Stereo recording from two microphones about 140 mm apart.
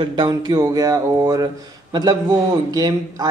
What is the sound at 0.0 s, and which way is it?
A man's voice, 35° right (ahead or behind).